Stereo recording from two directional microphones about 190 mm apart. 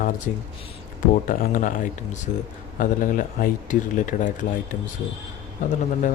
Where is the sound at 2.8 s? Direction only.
45° left (ahead or behind).